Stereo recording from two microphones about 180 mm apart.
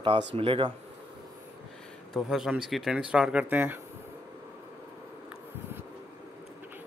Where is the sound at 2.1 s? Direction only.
Centre (ahead or behind).